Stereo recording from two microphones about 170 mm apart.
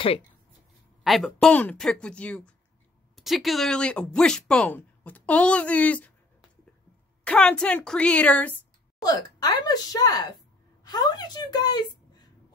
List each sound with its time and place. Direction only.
1.0 s speech: centre (ahead or behind)
7.2 s speech: 5° left (ahead or behind)
9.0 s speech: 20° left (ahead or behind)